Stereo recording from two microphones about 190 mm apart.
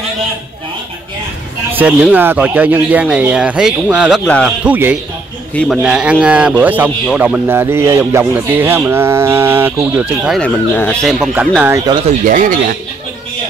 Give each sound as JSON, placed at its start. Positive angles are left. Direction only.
{"t": 1.7, "sound": "speech", "side_deg": -10}
{"t": 4.6, "sound": "speech", "side_deg": -10}
{"t": 5.5, "sound": "speech", "side_deg": 5}
{"t": 5.8, "sound": "speech", "side_deg": -5}
{"t": 11.3, "sound": "speech", "side_deg": -10}
{"t": 12.1, "sound": "speech", "side_deg": -45}